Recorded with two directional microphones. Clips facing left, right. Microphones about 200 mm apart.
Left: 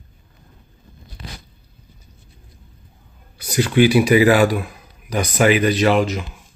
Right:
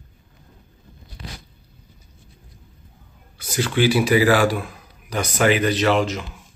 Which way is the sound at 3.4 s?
15° left (ahead or behind).